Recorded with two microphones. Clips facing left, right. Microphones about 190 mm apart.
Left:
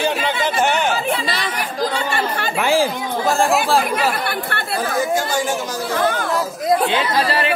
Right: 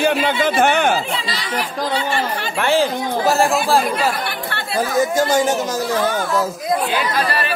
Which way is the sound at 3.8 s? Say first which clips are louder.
Even; 55° left (ahead or behind).